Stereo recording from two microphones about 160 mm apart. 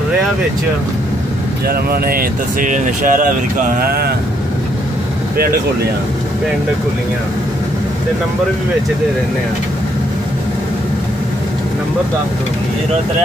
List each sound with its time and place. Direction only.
1.7 s speech: 65° right (ahead or behind)